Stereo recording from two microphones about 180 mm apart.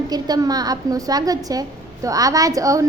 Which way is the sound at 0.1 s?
20° right (ahead or behind).